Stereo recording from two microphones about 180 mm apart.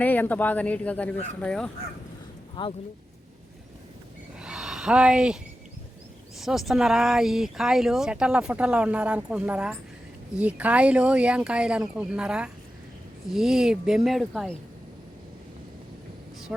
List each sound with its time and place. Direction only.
0.0 s speech: 10° left (ahead or behind)
2.6 s speech: 30° left (ahead or behind)
4.4 s a sound: 5° right (ahead or behind)
6.4 s speech: centre (ahead or behind)
16.5 s speech: 5° right (ahead or behind)